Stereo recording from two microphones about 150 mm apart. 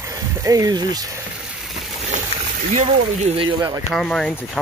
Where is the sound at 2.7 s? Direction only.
55° right (ahead or behind).